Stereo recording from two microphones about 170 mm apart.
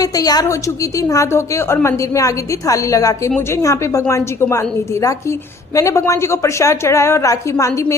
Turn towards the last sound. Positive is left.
turn(degrees=20)  # may be behind; listen again after turning